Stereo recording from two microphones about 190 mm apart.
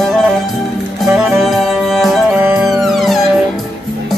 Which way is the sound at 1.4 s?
Centre (ahead or behind).